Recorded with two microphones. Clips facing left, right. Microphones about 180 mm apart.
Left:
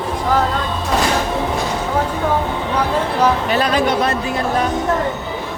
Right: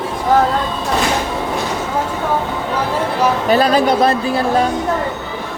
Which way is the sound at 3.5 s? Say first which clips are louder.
Right 4 dB; 35° right (ahead or behind).